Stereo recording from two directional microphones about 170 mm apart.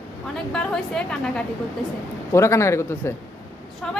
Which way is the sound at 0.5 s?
5° left (ahead or behind).